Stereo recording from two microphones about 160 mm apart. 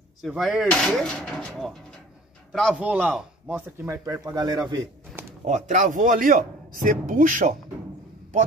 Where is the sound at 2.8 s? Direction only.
10° right (ahead or behind).